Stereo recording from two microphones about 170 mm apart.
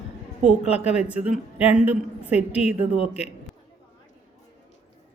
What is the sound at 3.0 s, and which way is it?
Speech, 40° left (ahead or behind).